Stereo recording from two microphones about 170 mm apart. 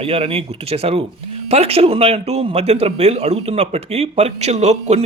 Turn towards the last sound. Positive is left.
turn(degrees=-40)  # may be behind; listen again after turning